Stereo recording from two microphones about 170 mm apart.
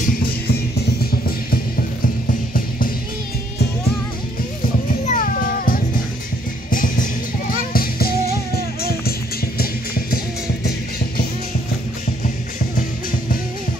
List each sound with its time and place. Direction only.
0.0 s music: 65° left (ahead or behind)
5.0 s music: 50° left (ahead or behind)
9.6 s music: 60° left (ahead or behind)